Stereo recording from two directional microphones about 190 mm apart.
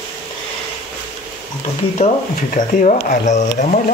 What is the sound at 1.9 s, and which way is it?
Speech, 40° left (ahead or behind).